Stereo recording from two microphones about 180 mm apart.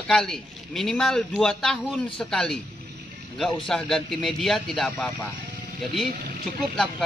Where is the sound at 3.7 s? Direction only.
Centre (ahead or behind).